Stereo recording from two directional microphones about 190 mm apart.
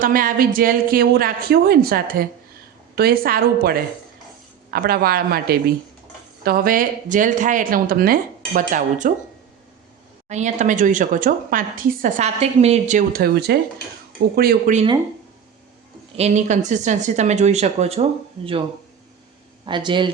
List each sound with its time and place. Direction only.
0.0 s speech: 50° right (ahead or behind)
10.2 s speech: 40° right (ahead or behind)
16.1 s speech: 35° right (ahead or behind)
19.6 s speech: 25° right (ahead or behind)